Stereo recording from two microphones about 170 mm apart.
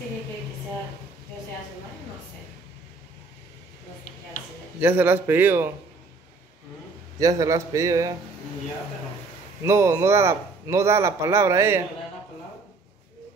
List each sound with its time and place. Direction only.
4.7 s a man's voice: 10° right (ahead or behind)
7.2 s a man's voice: 20° right (ahead or behind)
9.6 s a man's voice: 15° right (ahead or behind)